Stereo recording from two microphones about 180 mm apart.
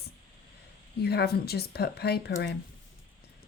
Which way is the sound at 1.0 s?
65° left (ahead or behind).